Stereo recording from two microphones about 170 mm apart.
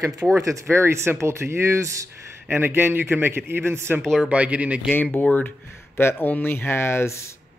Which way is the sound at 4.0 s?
Centre (ahead or behind).